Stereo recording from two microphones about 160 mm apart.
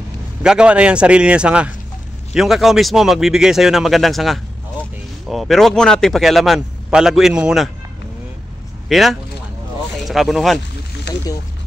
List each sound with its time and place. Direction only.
0.4 s a man's voice: 5° right (ahead or behind)
8.8 s a man's voice: centre (ahead or behind)
11.1 s a sound: 90° left